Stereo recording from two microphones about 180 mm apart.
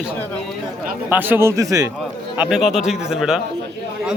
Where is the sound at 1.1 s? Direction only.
10° right (ahead or behind).